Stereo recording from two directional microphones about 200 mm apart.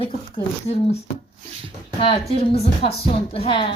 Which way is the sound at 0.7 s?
30° left (ahead or behind).